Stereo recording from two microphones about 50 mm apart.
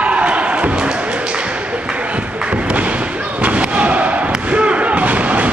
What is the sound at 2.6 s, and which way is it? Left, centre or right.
Basketball bounce, right.